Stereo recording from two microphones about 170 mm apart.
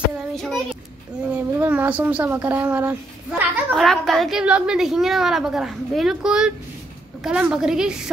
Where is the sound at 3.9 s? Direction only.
Centre (ahead or behind).